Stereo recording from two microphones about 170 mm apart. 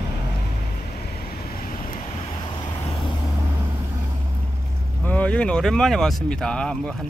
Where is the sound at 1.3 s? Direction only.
60° left (ahead or behind).